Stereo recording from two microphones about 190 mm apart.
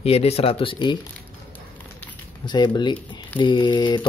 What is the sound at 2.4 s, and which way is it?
Speech, 25° left (ahead or behind).